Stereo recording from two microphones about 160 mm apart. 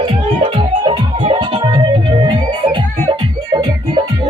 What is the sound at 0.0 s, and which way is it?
Music, 35° right (ahead or behind).